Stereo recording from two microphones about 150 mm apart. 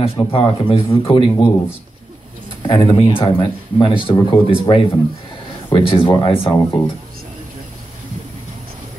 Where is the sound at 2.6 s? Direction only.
35° left (ahead or behind).